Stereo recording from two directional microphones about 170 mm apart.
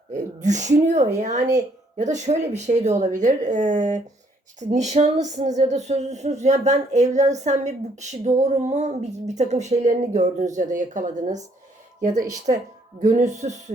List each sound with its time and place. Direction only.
0.1 s speech: 45° right (ahead or behind)
13.0 s speech: 45° right (ahead or behind)